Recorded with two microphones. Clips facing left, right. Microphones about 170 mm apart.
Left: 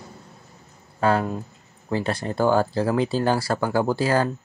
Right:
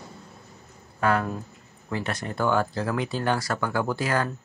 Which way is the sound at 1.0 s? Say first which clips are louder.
Left 3 dB; 30° left (ahead or behind).